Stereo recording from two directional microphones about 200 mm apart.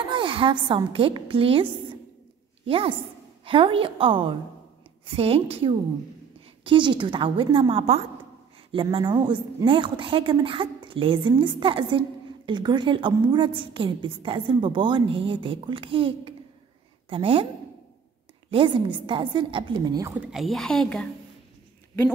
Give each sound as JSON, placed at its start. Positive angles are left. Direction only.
{"t": 0.1, "sound": "a woman's voice", "side_deg": -25}
{"t": 18.5, "sound": "a woman's voice", "side_deg": -25}